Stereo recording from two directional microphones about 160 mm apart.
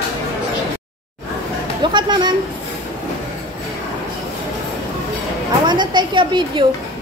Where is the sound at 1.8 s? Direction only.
30° right (ahead or behind).